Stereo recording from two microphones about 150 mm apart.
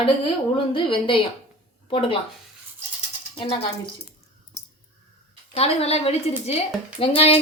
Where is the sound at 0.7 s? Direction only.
35° left (ahead or behind).